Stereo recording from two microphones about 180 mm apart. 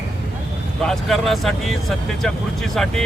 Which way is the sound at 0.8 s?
Centre (ahead or behind).